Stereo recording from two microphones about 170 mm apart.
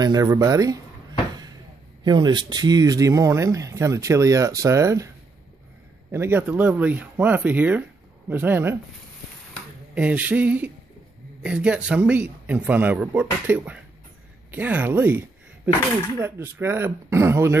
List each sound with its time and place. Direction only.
0.0 s speech: 20° right (ahead or behind)
2.0 s speech: 25° right (ahead or behind)
6.1 s speech: 10° right (ahead or behind)
9.9 s speech: 10° right (ahead or behind)